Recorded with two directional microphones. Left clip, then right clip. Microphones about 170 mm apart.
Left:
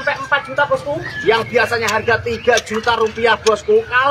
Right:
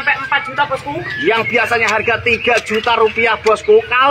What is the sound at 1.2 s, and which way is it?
A man's voice, 20° right (ahead or behind).